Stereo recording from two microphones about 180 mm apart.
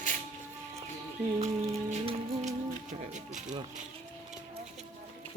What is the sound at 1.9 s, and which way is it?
Music, 40° right (ahead or behind).